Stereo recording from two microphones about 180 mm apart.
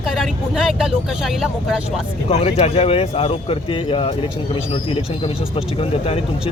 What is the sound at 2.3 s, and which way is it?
Speech, 35° left (ahead or behind).